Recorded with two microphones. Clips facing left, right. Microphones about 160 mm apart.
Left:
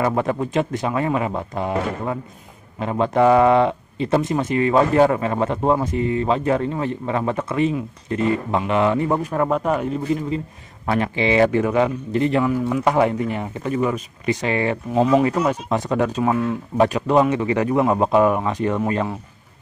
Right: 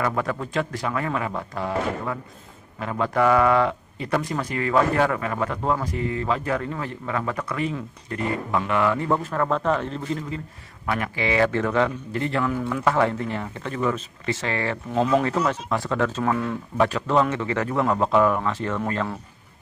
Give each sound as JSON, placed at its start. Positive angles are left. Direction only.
{"t": 0.0, "sound": "speech", "side_deg": 25}
{"t": 10.9, "sound": "speech", "side_deg": 25}
{"t": 15.0, "sound": "speech", "side_deg": 5}